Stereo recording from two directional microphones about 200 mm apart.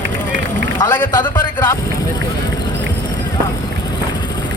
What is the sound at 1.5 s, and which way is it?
Speech, 20° left (ahead or behind).